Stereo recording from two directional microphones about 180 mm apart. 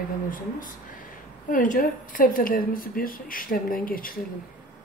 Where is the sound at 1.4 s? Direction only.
45° left (ahead or behind).